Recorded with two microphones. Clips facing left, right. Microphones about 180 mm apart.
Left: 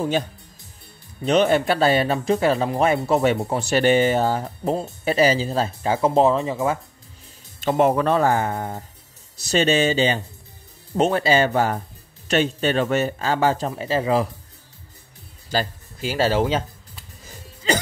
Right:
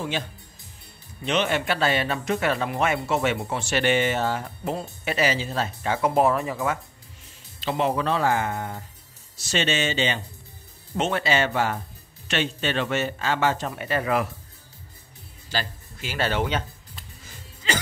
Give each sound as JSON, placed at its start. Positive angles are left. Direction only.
{"t": 1.2, "sound": "speech", "side_deg": 40}
{"t": 7.6, "sound": "speech", "side_deg": 50}
{"t": 15.5, "sound": "speech", "side_deg": 35}